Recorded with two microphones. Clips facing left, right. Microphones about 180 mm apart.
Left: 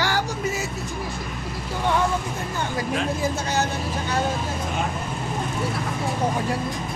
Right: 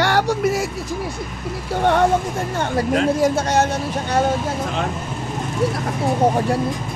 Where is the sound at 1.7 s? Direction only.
65° right (ahead or behind).